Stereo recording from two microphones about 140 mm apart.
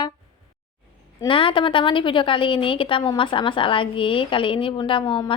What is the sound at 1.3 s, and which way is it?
A woman's voice, 40° left (ahead or behind).